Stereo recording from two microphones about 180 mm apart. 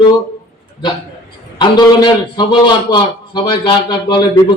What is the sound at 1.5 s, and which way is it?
A man's voice, 25° left (ahead or behind).